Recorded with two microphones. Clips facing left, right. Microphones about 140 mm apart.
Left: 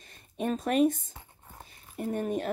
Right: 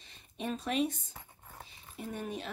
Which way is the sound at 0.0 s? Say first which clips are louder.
Left 7 dB; 50° left (ahead or behind).